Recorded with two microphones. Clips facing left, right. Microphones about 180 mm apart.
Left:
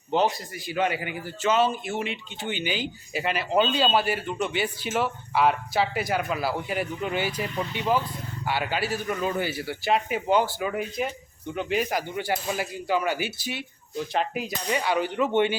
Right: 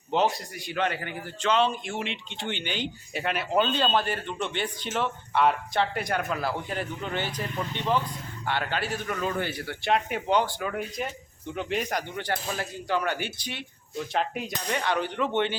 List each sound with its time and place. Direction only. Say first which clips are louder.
0.1 s a man's voice: left 1 dB; centre (ahead or behind)